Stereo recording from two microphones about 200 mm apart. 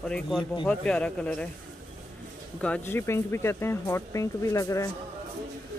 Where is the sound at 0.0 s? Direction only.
5° left (ahead or behind).